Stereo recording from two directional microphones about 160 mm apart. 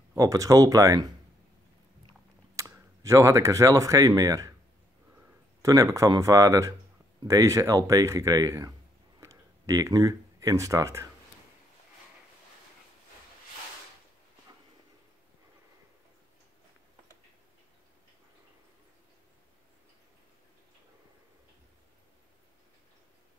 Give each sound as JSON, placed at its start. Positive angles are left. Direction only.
{"t": 0.1, "sound": "speech", "side_deg": -20}
{"t": 2.5, "sound": "speech", "side_deg": -20}
{"t": 5.6, "sound": "speech", "side_deg": -20}
{"t": 9.2, "sound": "a sound", "side_deg": -20}